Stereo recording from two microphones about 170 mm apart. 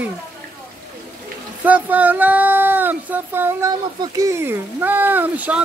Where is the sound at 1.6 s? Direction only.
10° right (ahead or behind).